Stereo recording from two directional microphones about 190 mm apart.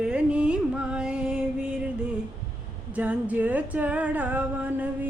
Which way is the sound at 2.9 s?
10° right (ahead or behind).